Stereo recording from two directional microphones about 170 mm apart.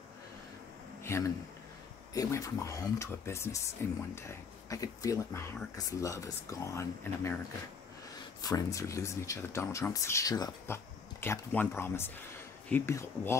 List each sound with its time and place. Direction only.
1.0 s a sound: 15° left (ahead or behind)
2.1 s speech: 20° left (ahead or behind)
8.4 s speech: 20° left (ahead or behind)